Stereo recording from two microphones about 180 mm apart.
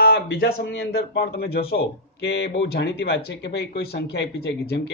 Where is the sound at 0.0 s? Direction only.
60° left (ahead or behind).